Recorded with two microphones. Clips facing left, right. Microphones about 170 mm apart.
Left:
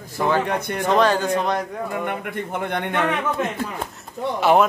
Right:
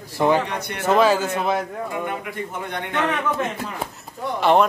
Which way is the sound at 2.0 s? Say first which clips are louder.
Left 1 dB; 55° left (ahead or behind).